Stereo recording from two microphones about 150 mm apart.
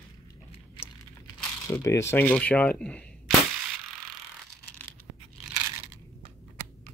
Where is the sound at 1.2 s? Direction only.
20° left (ahead or behind).